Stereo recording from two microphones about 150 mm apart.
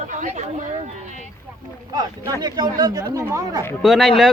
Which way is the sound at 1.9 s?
25° right (ahead or behind).